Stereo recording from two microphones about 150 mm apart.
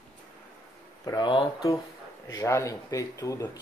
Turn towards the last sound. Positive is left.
turn(degrees=20)  # may be behind; listen again after turning